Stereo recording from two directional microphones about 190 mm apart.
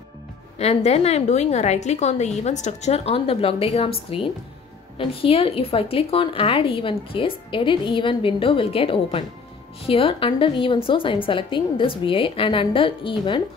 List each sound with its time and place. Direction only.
0.6 s a woman's voice: 35° left (ahead or behind)